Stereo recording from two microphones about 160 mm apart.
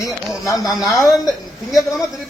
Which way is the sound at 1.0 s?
25° left (ahead or behind).